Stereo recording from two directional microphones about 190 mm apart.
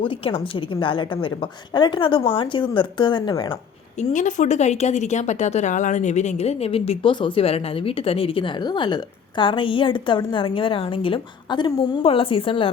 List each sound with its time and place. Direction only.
0.0 s speech: 30° left (ahead or behind)
4.1 s speech: 40° left (ahead or behind)